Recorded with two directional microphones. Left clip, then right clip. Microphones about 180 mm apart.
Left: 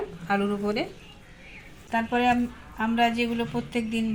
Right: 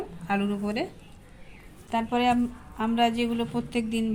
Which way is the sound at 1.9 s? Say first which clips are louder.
Left 1 dB; 20° right (ahead or behind).